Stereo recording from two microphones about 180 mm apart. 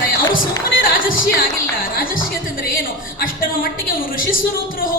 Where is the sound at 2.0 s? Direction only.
50° left (ahead or behind).